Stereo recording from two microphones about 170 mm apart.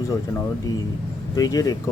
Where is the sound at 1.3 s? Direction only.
20° left (ahead or behind).